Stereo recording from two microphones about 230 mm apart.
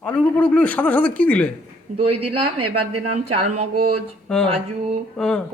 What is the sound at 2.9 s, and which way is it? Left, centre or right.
Speech, right.